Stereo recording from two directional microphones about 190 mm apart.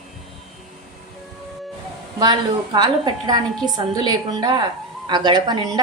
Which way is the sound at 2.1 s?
20° right (ahead or behind).